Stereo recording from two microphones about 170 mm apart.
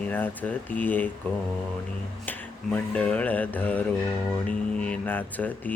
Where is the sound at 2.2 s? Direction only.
5° left (ahead or behind).